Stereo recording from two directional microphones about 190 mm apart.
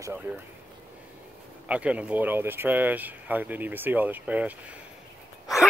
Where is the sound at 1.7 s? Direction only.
5° right (ahead or behind).